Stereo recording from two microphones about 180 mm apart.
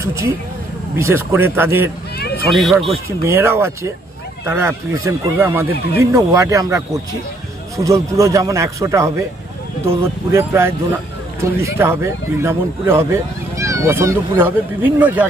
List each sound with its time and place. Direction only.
0.0 s speech: 15° right (ahead or behind)
2.1 s a sound: 60° left (ahead or behind)
2.5 s speech: centre (ahead or behind)
3.3 s speech: 15° right (ahead or behind)